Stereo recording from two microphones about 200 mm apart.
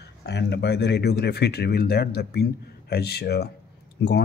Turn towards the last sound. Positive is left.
turn(degrees=55)  # may be behind; listen again after turning